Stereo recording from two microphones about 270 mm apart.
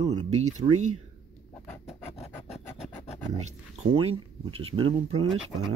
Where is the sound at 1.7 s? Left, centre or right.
Centre.